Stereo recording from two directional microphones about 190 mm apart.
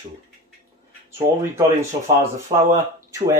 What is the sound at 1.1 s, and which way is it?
Speech, 15° right (ahead or behind).